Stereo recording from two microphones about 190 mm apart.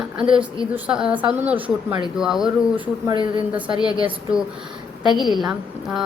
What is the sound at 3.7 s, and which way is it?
Speech, 20° left (ahead or behind).